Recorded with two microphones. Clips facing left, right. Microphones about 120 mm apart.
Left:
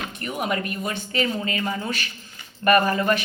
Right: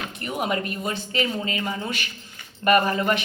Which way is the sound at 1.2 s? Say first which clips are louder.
Left 2 dB; 20° right (ahead or behind).